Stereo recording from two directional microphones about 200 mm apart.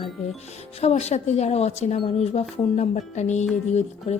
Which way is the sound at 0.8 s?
30° left (ahead or behind).